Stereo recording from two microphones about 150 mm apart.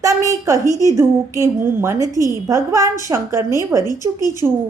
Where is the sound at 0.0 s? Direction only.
20° right (ahead or behind).